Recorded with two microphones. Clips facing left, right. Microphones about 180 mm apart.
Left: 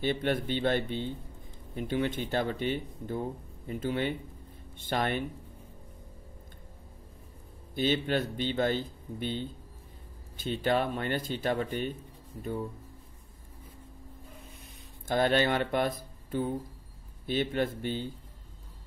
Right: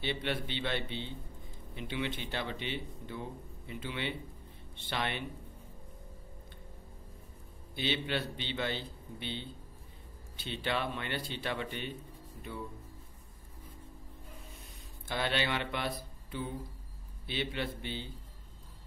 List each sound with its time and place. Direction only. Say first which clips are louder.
0.0 s speech: left 6 dB; 45° left (ahead or behind)
7.7 s speech: left 6 dB; 45° left (ahead or behind)
15.0 s speech: left 8 dB; 45° left (ahead or behind)